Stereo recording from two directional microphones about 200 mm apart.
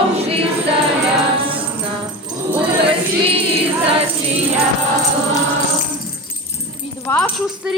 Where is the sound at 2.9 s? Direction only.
25° right (ahead or behind).